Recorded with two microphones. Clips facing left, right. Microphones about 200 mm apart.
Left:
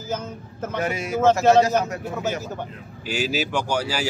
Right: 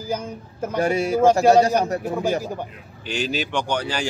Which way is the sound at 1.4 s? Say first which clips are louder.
Right 1 dB; 10° right (ahead or behind).